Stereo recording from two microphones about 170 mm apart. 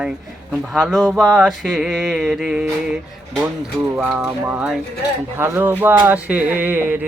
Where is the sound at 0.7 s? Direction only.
Centre (ahead or behind).